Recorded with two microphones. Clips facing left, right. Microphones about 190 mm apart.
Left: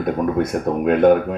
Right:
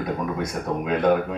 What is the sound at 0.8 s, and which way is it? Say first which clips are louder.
Speech: left 7 dB; 55° left (ahead or behind).